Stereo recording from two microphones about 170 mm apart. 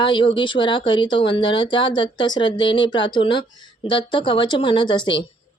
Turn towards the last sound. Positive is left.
turn(degrees=30)  # may be behind; listen again after turning